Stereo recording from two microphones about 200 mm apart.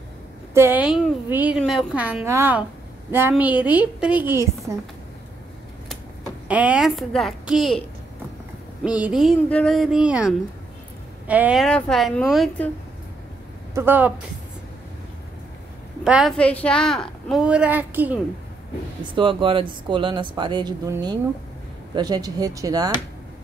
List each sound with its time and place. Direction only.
0.6 s a woman's voice: 10° right (ahead or behind)
6.4 s speech: 5° right (ahead or behind)
8.8 s speech: 5° right (ahead or behind)
13.7 s a woman's voice: 10° right (ahead or behind)
16.0 s speech: 5° right (ahead or behind)
19.1 s speech: 25° right (ahead or behind)